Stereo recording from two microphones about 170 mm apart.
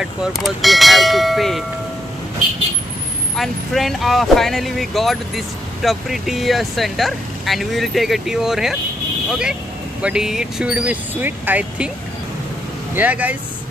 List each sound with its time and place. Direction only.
0.0 s speech: centre (ahead or behind)
3.3 s speech: centre (ahead or behind)
12.9 s speech: 10° right (ahead or behind)